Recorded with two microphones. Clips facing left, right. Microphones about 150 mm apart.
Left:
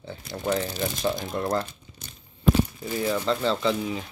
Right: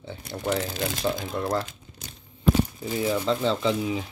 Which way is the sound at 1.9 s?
55° right (ahead or behind).